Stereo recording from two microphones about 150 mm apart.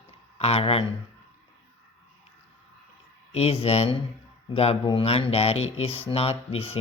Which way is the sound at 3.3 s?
40° left (ahead or behind).